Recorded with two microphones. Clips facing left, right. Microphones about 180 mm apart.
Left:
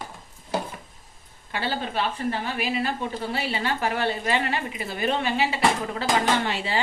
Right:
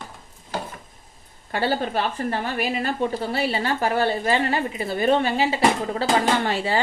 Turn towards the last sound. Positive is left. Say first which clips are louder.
# right 3 dB
turn(degrees=-40)  # may be behind; listen again after turning